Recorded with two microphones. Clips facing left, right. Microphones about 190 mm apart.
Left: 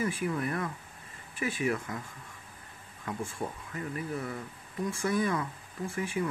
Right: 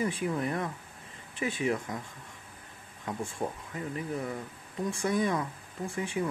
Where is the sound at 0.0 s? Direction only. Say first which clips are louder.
Right 1 dB; 20° right (ahead or behind).